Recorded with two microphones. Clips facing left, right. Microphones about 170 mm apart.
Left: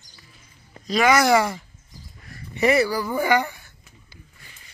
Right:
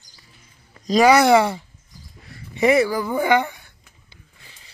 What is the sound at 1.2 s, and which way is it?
Speech, 25° right (ahead or behind).